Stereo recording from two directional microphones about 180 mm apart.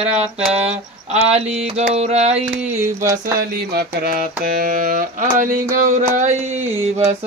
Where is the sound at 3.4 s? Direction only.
55° right (ahead or behind).